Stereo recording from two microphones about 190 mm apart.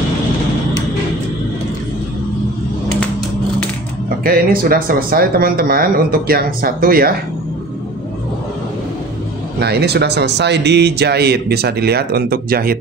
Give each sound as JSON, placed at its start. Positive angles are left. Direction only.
{"t": 4.2, "sound": "speech", "side_deg": -50}
{"t": 9.6, "sound": "speech", "side_deg": -60}